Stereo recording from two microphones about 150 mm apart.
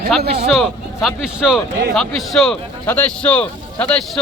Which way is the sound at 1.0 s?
5° right (ahead or behind).